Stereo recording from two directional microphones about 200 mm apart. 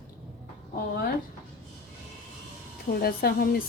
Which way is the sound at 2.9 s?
50° left (ahead or behind).